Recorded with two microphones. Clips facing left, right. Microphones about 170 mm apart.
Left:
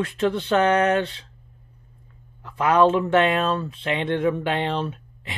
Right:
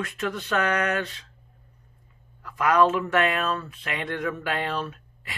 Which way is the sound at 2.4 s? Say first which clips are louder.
Left 3 dB; 25° left (ahead or behind).